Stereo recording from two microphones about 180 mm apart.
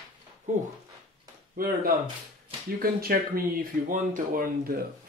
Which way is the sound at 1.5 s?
55° right (ahead or behind).